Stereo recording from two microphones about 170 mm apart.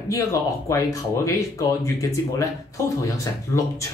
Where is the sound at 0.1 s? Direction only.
15° left (ahead or behind).